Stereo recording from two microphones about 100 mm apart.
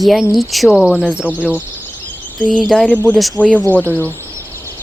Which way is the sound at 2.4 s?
Centre (ahead or behind).